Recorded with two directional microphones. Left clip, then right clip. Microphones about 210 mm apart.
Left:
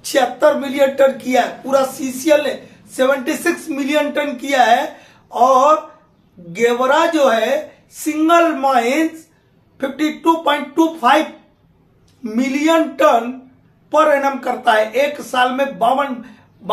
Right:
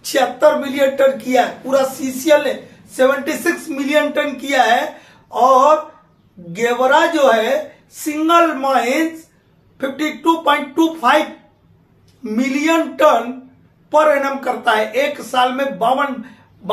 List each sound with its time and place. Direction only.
0.0 s a woman's voice: 15° left (ahead or behind)